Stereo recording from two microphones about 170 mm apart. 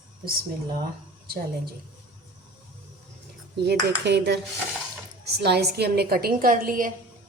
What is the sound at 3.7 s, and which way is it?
Cutlery, 80° right.